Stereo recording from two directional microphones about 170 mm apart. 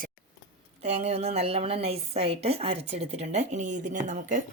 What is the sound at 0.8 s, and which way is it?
A woman's voice, 40° right (ahead or behind).